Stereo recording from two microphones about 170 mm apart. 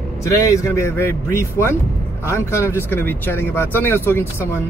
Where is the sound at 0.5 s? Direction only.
15° left (ahead or behind).